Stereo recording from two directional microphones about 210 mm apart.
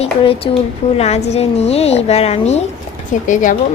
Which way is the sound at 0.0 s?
25° left (ahead or behind).